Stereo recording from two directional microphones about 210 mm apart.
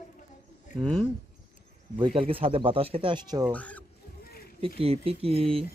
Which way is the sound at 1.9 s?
25° right (ahead or behind).